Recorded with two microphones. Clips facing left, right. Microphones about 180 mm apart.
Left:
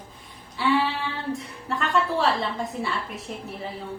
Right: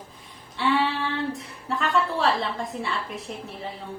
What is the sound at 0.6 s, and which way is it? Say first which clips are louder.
A woman's voice: even; centre (ahead or behind).